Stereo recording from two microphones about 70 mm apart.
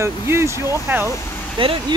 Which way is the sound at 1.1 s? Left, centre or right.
Left.